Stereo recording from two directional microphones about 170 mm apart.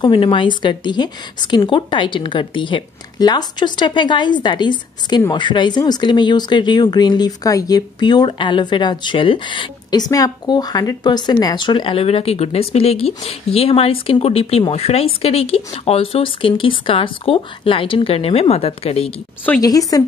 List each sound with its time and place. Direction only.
0.0 s speech: 30° left (ahead or behind)
19.6 s speech: 20° left (ahead or behind)